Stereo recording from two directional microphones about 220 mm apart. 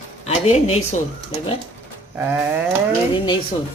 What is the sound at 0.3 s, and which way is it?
Speech, 30° left (ahead or behind).